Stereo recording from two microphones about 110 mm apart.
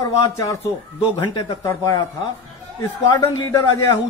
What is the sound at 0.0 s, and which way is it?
Speech, 30° left (ahead or behind).